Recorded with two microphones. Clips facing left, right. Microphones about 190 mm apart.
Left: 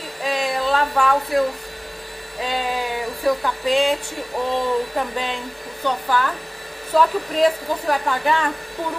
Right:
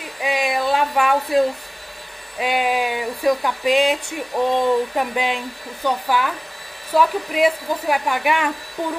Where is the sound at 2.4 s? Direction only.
15° right (ahead or behind).